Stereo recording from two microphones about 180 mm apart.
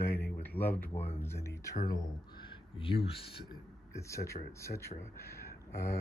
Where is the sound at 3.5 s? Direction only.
15° left (ahead or behind).